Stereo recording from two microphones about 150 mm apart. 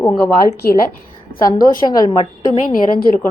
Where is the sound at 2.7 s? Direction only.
75° left (ahead or behind).